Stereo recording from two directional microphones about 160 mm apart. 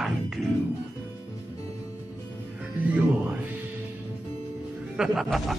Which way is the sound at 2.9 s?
10° right (ahead or behind).